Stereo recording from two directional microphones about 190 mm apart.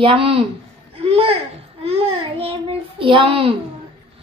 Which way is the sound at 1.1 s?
30° right (ahead or behind).